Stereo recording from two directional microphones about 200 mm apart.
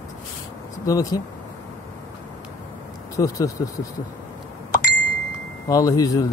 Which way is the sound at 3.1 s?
15° left (ahead or behind).